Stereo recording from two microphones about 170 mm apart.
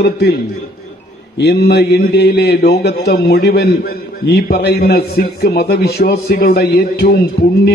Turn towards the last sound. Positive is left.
turn(degrees=70)  # may be behind; listen again after turning